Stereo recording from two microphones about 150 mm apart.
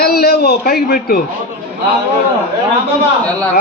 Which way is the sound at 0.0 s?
90° left.